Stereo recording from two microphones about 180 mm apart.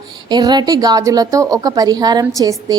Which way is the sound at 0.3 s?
25° right (ahead or behind).